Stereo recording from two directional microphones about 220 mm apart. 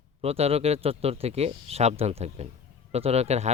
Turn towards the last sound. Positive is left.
turn(degrees=-30)  # may be behind; listen again after turning